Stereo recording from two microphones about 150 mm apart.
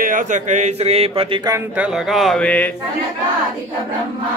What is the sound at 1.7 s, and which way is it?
Speech, 5° right (ahead or behind).